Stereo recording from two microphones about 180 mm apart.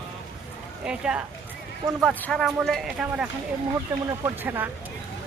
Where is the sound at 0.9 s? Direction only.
5° right (ahead or behind).